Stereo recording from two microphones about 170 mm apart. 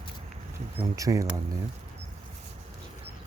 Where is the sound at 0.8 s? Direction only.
20° right (ahead or behind).